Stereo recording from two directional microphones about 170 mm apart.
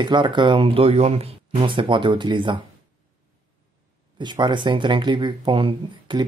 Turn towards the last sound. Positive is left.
turn(degrees=-30)  # may be behind; listen again after turning